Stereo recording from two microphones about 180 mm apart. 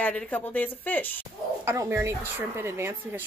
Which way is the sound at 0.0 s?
10° left (ahead or behind).